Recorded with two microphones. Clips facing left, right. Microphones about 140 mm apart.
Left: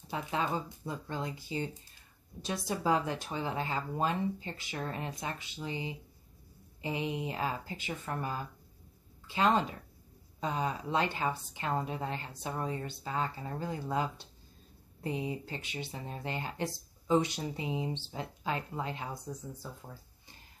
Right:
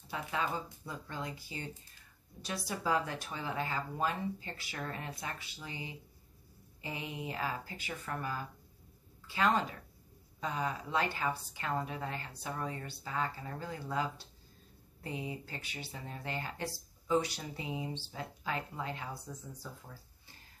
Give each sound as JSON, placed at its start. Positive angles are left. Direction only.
{"t": 0.1, "sound": "speech", "side_deg": 25}